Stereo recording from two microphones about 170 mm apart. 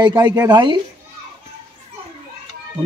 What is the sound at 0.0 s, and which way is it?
Speech, 25° right (ahead or behind).